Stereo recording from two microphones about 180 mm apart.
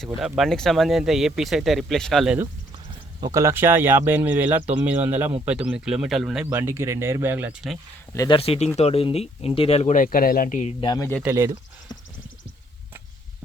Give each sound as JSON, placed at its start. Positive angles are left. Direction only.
{"t": 0.0, "sound": "speech", "side_deg": 0}
{"t": 3.2, "sound": "speech", "side_deg": -20}
{"t": 8.1, "sound": "speech", "side_deg": 20}
{"t": 8.4, "sound": "speech", "side_deg": 35}
{"t": 10.8, "sound": "speech", "side_deg": 20}
{"t": 11.2, "sound": "speech", "side_deg": -15}